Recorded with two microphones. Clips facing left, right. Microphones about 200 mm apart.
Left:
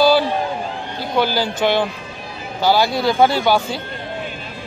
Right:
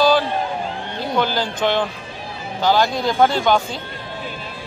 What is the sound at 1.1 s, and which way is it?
Speech, 5° left (ahead or behind).